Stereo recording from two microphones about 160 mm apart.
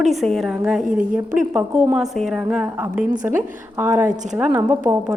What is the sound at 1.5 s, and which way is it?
A woman's voice, 10° right (ahead or behind).